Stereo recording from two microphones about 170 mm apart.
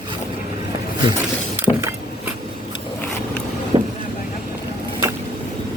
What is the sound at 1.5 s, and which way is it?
Vehicle, 15° right (ahead or behind).